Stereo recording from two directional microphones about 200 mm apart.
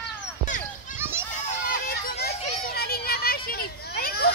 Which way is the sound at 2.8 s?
50° left (ahead or behind).